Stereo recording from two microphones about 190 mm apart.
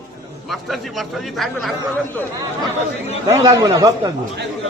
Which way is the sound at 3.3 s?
20° right (ahead or behind).